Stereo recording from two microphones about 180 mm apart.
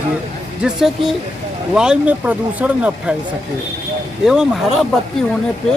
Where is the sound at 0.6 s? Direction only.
Centre (ahead or behind).